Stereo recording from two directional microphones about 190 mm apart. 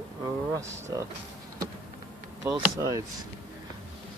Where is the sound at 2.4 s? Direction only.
15° right (ahead or behind).